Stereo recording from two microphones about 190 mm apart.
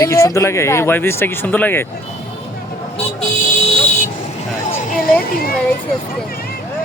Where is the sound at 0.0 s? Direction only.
15° left (ahead or behind).